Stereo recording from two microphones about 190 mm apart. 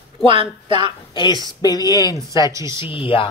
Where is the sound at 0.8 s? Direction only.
25° left (ahead or behind).